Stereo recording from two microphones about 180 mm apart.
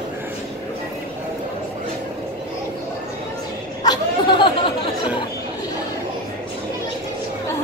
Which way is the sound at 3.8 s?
25° left (ahead or behind).